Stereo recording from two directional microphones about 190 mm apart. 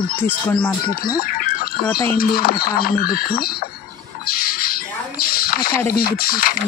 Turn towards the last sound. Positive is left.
turn(degrees=50)  # may be behind; listen again after turning